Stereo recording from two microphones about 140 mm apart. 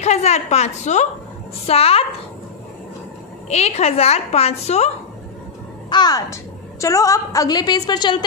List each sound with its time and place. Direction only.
0.0 s a woman's voice: 50° left (ahead or behind)
3.4 s a woman's voice: 50° left (ahead or behind)
5.9 s a woman's voice: 30° left (ahead or behind)